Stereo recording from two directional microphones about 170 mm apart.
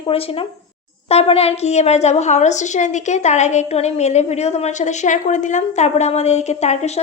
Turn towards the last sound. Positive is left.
turn(degrees=40)  # may be behind; listen again after turning